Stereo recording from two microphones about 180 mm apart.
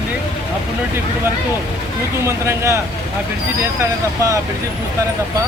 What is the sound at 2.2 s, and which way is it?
Speech, 15° right (ahead or behind).